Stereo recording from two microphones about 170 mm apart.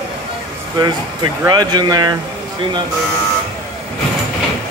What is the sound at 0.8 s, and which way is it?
Speech, 25° right (ahead or behind).